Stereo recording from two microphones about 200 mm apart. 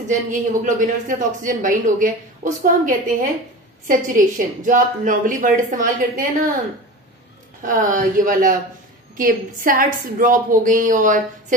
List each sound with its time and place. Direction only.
0.1 s speech: 40° right (ahead or behind)
7.6 s a woman's voice: 40° right (ahead or behind)